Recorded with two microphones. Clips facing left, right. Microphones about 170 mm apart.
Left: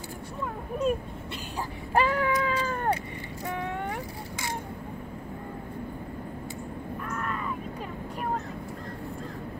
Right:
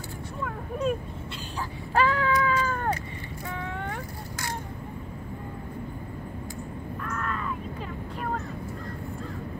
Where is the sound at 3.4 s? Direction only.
15° left (ahead or behind).